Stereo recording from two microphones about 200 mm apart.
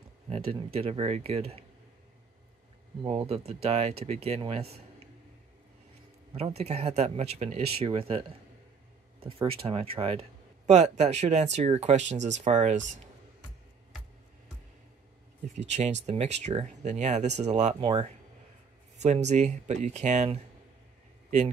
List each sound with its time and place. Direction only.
0.7 s speech: 30° right (ahead or behind)
3.0 s speech: 25° right (ahead or behind)
6.3 s speech: 30° right (ahead or behind)
9.5 s speech: 30° right (ahead or behind)
15.7 s speech: 35° right (ahead or behind)
17.7 s speech: 25° right (ahead or behind)
19.0 s speech: 35° right (ahead or behind)